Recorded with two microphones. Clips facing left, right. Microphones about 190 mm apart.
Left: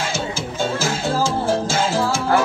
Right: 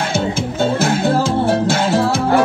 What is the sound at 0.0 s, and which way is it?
Music, 60° right (ahead or behind).